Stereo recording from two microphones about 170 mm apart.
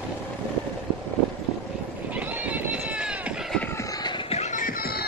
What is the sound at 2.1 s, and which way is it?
Run, 10° right (ahead or behind).